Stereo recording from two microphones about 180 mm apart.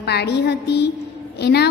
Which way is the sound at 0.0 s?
65° left (ahead or behind).